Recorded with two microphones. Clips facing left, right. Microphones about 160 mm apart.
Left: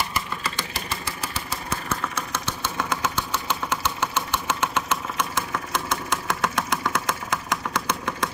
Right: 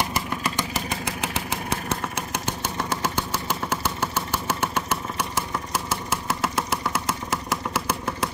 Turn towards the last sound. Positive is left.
turn(degrees=-5)  # may be behind; listen again after turning